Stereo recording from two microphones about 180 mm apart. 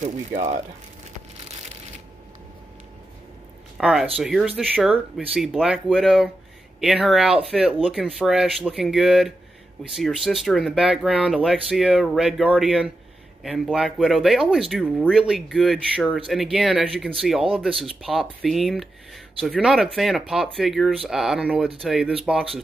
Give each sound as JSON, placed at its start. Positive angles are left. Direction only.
{"t": 0.0, "sound": "speech", "side_deg": -40}
{"t": 3.7, "sound": "speech", "side_deg": -5}